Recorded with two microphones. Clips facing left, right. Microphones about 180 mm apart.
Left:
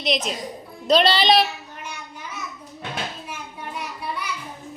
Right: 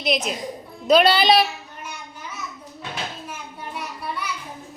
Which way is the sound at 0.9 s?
5° right (ahead or behind).